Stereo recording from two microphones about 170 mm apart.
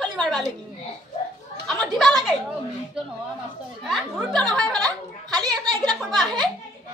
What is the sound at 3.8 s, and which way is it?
Speech, centre (ahead or behind).